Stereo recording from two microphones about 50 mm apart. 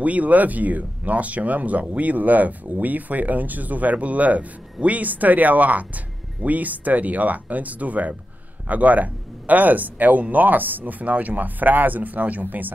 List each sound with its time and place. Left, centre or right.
0.0 s speech: right